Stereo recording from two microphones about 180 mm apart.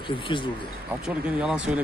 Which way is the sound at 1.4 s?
5° right (ahead or behind).